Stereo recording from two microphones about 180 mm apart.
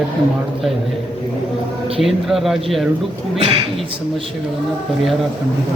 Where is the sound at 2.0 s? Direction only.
Centre (ahead or behind).